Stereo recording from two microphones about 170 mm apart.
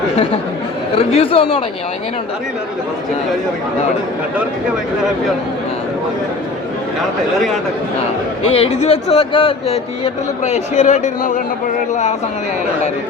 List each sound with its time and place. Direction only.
0.9 s speech: 35° left (ahead or behind)
8.4 s speech: 35° left (ahead or behind)